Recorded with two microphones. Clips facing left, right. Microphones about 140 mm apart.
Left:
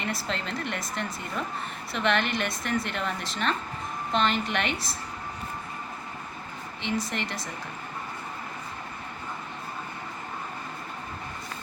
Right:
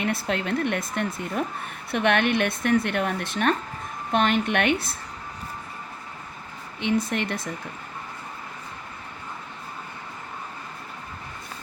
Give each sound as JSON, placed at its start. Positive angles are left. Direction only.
{"t": 0.0, "sound": "a woman's voice", "side_deg": -55}
{"t": 6.8, "sound": "a woman's voice", "side_deg": -55}